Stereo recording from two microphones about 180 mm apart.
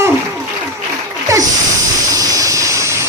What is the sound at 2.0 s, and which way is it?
Vehicle, 20° right (ahead or behind).